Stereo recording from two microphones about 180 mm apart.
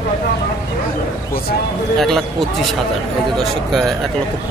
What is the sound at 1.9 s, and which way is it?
Speech, centre (ahead or behind).